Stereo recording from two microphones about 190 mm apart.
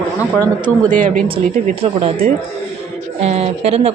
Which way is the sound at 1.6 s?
30° right (ahead or behind).